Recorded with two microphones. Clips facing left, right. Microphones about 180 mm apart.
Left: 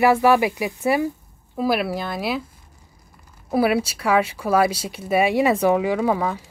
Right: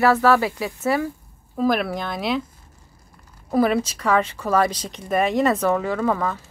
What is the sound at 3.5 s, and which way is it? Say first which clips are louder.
Speech: even; 10° left (ahead or behind).